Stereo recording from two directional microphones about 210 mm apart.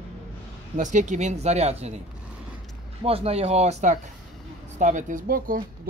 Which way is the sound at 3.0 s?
30° right (ahead or behind).